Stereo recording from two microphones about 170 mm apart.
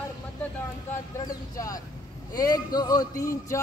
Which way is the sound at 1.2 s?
20° left (ahead or behind).